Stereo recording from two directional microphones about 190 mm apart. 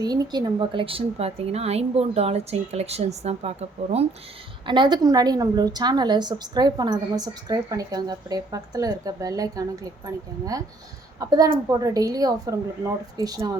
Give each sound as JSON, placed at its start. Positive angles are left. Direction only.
{"t": 0.0, "sound": "a woman's voice", "side_deg": -20}
{"t": 4.6, "sound": "a woman's voice", "side_deg": -25}
{"t": 11.2, "sound": "a woman's voice", "side_deg": -20}